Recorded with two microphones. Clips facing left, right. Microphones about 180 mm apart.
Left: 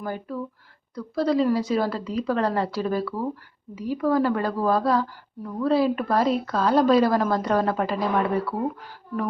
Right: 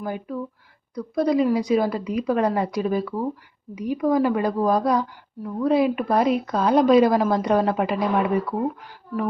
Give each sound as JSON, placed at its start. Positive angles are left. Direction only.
{"t": 0.0, "sound": "a woman's voice", "side_deg": -10}